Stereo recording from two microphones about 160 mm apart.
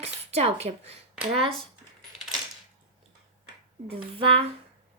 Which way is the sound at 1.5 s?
Centre (ahead or behind).